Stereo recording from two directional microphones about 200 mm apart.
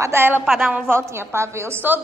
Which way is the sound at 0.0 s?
10° right (ahead or behind).